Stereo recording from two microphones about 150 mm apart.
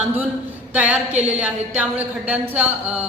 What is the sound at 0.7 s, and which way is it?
Speech, 10° right (ahead or behind).